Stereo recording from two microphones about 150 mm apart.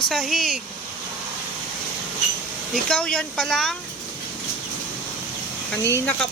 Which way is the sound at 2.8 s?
5° left (ahead or behind).